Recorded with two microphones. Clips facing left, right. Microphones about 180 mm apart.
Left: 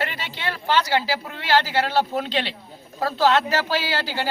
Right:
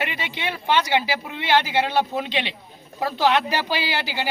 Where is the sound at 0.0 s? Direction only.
15° right (ahead or behind).